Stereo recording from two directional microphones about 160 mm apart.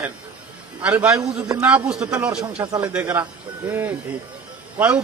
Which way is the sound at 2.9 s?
10° right (ahead or behind).